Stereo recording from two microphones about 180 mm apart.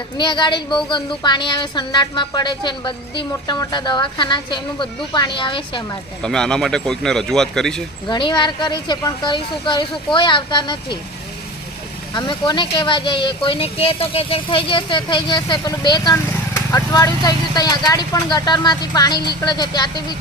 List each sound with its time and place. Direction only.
0.2 s speech: 25° left (ahead or behind)
6.2 s speech: 5° left (ahead or behind)
8.0 s speech: 25° left (ahead or behind)
12.1 s speech: 25° left (ahead or behind)